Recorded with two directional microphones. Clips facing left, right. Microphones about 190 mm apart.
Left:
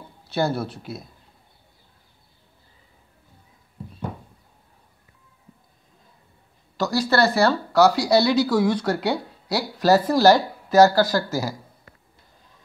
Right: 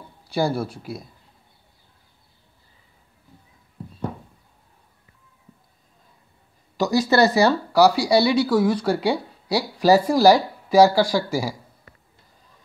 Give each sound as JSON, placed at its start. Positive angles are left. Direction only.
{"t": 0.3, "sound": "speech", "side_deg": -10}
{"t": 6.8, "sound": "speech", "side_deg": -15}